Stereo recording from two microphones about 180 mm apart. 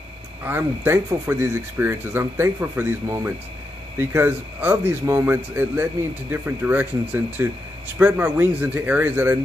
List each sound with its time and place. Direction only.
0.4 s speech: 10° right (ahead or behind)